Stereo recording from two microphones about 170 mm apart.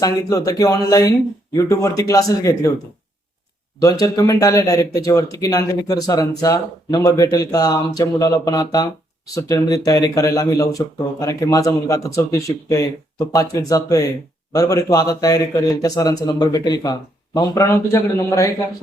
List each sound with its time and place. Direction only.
0.0 s speech: 20° left (ahead or behind)
3.8 s speech: 20° left (ahead or behind)